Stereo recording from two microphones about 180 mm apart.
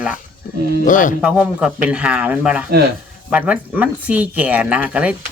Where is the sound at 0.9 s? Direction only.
45° left (ahead or behind).